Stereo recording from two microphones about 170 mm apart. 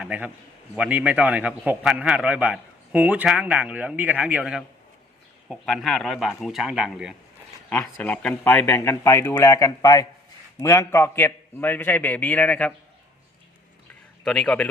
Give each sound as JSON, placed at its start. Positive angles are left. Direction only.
{"t": 0.0, "sound": "a man's voice", "side_deg": -10}
{"t": 7.7, "sound": "speech", "side_deg": 10}
{"t": 14.3, "sound": "speech", "side_deg": 5}